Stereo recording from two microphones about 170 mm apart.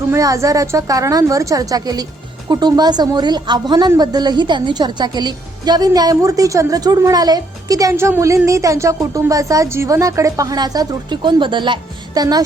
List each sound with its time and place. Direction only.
0.1 s a woman's voice: 20° right (ahead or behind)